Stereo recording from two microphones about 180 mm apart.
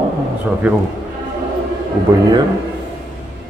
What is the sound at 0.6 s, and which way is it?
Speech, 10° right (ahead or behind).